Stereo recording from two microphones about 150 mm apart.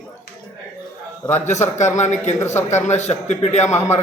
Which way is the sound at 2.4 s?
15° left (ahead or behind).